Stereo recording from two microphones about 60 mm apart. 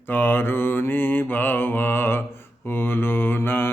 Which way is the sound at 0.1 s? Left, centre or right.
Left.